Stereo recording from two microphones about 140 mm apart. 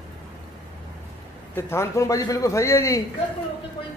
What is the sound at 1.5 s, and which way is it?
A man's voice, 20° left (ahead or behind).